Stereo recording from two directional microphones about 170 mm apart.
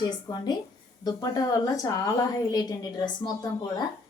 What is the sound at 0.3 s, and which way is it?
A woman's voice, 25° left (ahead or behind).